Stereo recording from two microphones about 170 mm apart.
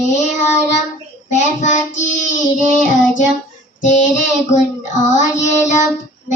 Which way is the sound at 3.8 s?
45° left (ahead or behind).